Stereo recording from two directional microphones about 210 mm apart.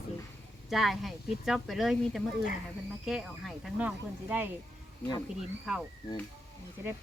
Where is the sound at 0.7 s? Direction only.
Centre (ahead or behind).